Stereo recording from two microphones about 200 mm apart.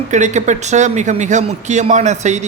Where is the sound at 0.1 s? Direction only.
35° right (ahead or behind).